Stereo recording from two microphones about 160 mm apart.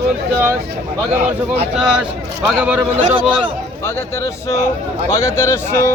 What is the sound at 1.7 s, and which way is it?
A man's voice, 5° right (ahead or behind).